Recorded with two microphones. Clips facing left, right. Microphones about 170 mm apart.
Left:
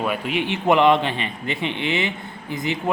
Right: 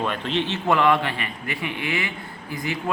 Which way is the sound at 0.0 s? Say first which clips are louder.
Left 1 dB; 10° left (ahead or behind).